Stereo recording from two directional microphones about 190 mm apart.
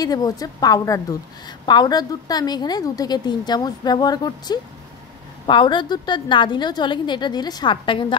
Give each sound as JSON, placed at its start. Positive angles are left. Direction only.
{"t": 0.0, "sound": "a woman's voice", "side_deg": 20}